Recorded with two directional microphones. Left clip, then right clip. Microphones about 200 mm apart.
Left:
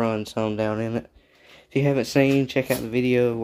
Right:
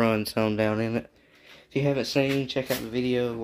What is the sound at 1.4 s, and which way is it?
Speech, 25° left (ahead or behind).